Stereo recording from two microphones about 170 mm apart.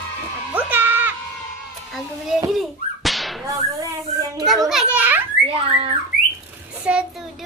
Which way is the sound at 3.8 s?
20° right (ahead or behind).